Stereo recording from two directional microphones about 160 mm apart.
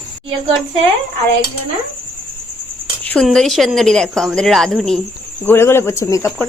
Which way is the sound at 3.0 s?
5° left (ahead or behind).